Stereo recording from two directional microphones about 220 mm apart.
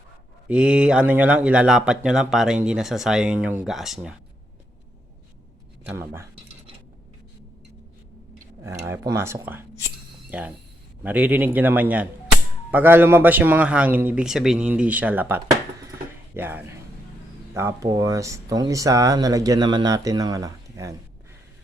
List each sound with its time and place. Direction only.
0.4 s speech: 5° right (ahead or behind)
5.8 s speech: 10° right (ahead or behind)
8.6 s speech: 10° right (ahead or behind)